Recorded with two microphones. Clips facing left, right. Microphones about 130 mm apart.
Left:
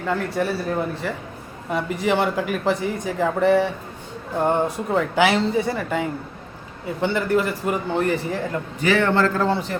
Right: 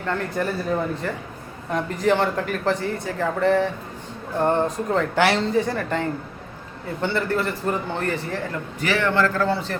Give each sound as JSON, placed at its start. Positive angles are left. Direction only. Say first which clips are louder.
{"t": 0.0, "sound": "speech", "louder": "left 2 dB", "side_deg": 5}
{"t": 8.8, "sound": "a man's voice", "louder": "left 2 dB", "side_deg": 25}